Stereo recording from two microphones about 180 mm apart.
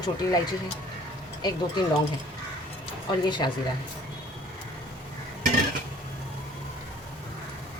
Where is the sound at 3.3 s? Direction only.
25° left (ahead or behind).